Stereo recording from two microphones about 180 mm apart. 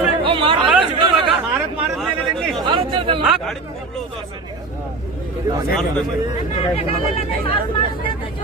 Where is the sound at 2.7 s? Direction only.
25° right (ahead or behind).